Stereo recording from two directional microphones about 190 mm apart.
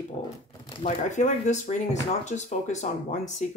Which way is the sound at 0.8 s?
40° left (ahead or behind).